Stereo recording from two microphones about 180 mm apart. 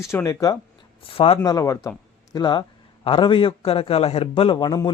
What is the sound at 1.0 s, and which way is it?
A man's voice, 30° left (ahead or behind).